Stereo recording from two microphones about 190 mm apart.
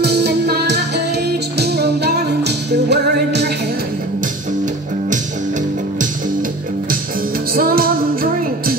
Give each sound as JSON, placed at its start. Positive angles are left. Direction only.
{"t": 0.0, "sound": "music", "side_deg": -60}
{"t": 7.5, "sound": "music", "side_deg": -50}